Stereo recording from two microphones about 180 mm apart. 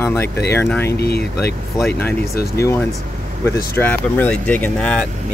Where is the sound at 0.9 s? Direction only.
60° left (ahead or behind).